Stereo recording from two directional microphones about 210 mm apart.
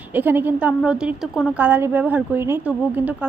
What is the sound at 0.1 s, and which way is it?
A woman's voice, 10° right (ahead or behind).